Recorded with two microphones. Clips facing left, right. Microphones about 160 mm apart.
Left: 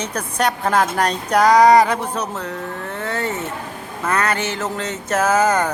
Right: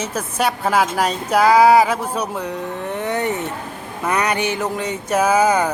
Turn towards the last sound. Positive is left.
turn(degrees=-10)  # may be behind; listen again after turning